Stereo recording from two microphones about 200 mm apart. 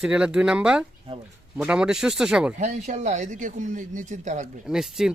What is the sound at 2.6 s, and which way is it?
Speech, 35° right (ahead or behind).